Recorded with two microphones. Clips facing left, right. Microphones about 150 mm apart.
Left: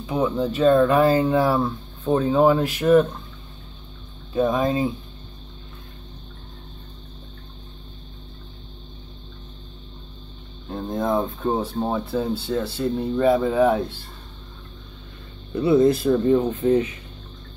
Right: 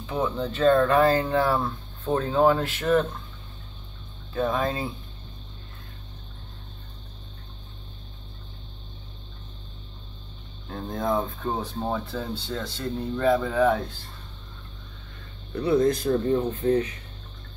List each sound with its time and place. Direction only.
0.0 s speech: 10° left (ahead or behind)
4.3 s speech: 15° left (ahead or behind)
10.7 s speech: 20° left (ahead or behind)
11.6 s speech: 10° left (ahead or behind)
15.5 s speech: 10° left (ahead or behind)
16.3 s speech: 20° left (ahead or behind)